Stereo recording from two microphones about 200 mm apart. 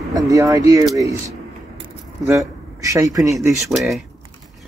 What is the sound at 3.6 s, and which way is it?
Speech, centre (ahead or behind).